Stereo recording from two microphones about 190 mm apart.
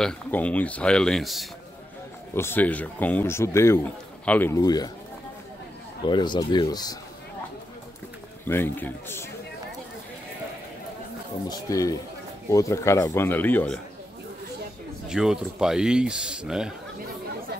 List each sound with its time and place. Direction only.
0.0 s speech: 5° left (ahead or behind)
2.3 s a man's voice: 10° left (ahead or behind)
6.0 s speech: 25° left (ahead or behind)
8.5 s a man's voice: 10° left (ahead or behind)
11.4 s a man's voice: 20° left (ahead or behind)
15.0 s speech: 5° right (ahead or behind)